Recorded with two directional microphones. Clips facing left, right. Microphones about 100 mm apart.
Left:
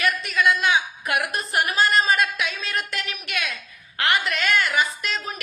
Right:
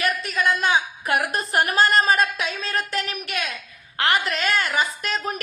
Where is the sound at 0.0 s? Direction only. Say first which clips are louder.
Left 1 dB; 35° right (ahead or behind).